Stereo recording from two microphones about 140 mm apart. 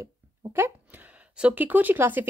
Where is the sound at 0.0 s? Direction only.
15° right (ahead or behind).